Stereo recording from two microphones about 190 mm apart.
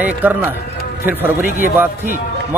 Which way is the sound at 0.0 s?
10° right (ahead or behind).